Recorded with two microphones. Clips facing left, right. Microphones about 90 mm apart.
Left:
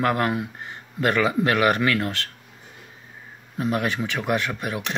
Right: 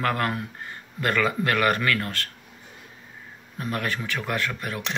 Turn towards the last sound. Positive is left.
turn(degrees=15)  # may be behind; listen again after turning